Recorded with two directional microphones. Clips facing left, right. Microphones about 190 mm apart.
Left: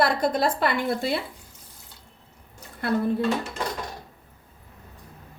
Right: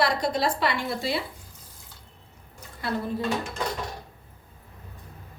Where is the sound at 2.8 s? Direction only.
55° left (ahead or behind).